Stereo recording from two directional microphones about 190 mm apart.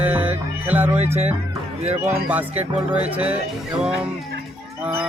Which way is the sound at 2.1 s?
10° right (ahead or behind).